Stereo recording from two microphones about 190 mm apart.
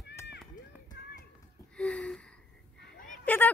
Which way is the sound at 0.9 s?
60° left (ahead or behind).